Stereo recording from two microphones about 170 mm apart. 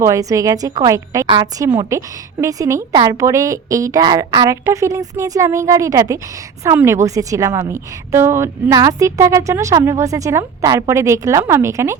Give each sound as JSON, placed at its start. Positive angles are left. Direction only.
{"t": 0.0, "sound": "a woman's voice", "side_deg": -20}